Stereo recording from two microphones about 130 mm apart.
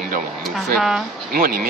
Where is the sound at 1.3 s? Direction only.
90° right.